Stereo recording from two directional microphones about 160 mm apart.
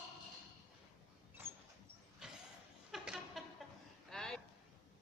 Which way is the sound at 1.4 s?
15° right (ahead or behind).